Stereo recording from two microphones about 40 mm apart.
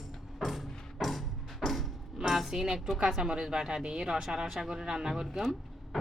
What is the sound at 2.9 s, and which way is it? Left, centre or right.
Speech, centre.